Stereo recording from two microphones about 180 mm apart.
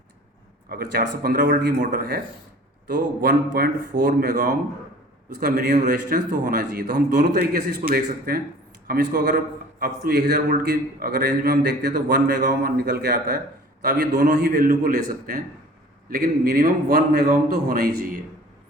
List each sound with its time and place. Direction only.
0.7 s a man's voice: 55° right (ahead or behind)
13.8 s a man's voice: 45° right (ahead or behind)